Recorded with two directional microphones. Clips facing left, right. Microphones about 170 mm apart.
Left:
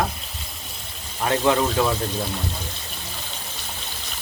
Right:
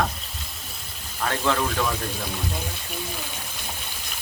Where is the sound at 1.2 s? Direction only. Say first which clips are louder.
Left 4 dB; 20° left (ahead or behind).